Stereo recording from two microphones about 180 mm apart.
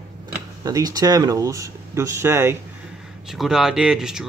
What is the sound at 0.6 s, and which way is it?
Speech, 20° right (ahead or behind).